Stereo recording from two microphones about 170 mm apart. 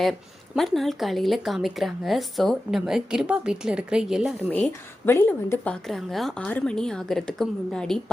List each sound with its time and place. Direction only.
0.0 s speech: centre (ahead or behind)
4.4 s speech: 10° left (ahead or behind)